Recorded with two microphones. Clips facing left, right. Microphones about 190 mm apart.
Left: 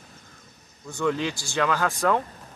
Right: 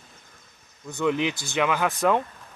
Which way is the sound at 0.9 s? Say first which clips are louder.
Right 1 dB; 20° right (ahead or behind).